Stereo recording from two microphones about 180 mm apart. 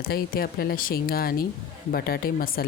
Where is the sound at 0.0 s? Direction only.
55° left (ahead or behind).